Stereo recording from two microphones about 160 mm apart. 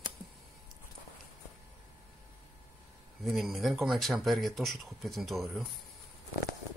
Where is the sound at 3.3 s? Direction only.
Centre (ahead or behind).